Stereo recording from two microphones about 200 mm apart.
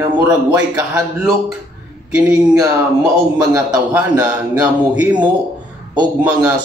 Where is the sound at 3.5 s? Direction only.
15° right (ahead or behind).